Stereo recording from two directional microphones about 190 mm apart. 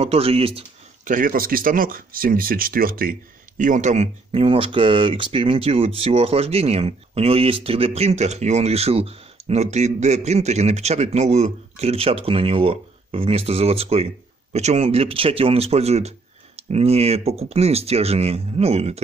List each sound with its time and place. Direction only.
0.0 s speech: 30° right (ahead or behind)
1.0 s speech: 45° right (ahead or behind)